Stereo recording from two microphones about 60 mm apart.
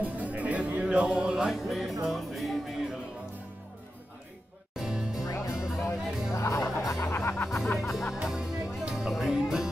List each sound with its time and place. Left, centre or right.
0.0 s music: right; by 2.9 s centre
4.7 s music: centre
5.2 s music: left
8.1 s music: centre